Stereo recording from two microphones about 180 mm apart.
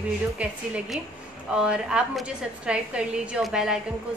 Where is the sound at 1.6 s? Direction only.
5° right (ahead or behind).